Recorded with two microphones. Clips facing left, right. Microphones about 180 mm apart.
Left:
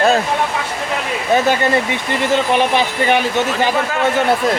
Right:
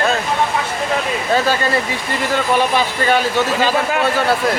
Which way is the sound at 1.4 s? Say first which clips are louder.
Left 2 dB; 20° left (ahead or behind).